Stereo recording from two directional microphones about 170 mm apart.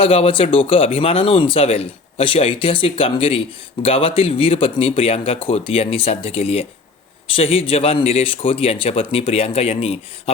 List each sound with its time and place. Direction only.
0.0 s speech: 35° left (ahead or behind)